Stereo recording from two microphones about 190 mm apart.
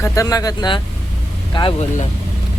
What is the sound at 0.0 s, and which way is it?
Speech, 15° left (ahead or behind).